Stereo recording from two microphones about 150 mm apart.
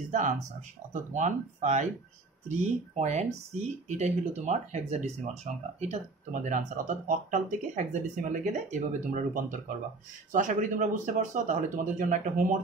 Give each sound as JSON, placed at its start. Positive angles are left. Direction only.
{"t": 0.1, "sound": "speech", "side_deg": -55}
{"t": 6.5, "sound": "speech", "side_deg": -60}